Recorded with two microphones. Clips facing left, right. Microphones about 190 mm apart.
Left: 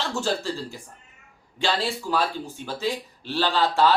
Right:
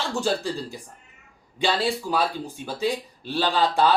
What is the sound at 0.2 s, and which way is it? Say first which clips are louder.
Speech: right 3 dB; 15° right (ahead or behind).